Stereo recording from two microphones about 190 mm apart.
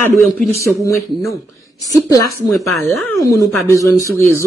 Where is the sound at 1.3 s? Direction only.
15° left (ahead or behind).